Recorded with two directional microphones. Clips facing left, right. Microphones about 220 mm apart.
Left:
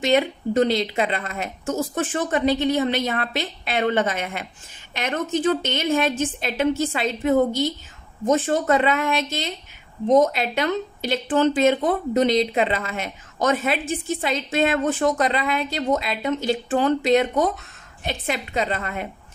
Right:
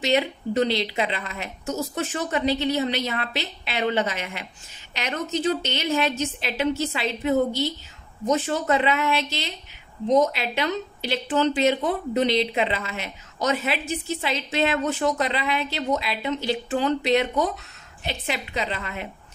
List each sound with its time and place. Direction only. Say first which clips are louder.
0.0 s speech: left 3 dB; 50° left (ahead or behind)